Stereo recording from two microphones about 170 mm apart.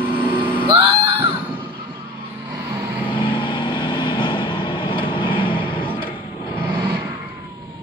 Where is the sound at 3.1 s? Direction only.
30° left (ahead or behind).